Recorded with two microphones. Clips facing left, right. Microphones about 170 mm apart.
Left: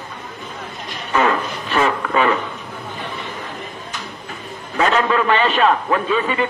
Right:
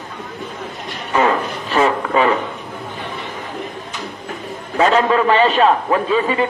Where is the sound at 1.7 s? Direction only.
30° right (ahead or behind).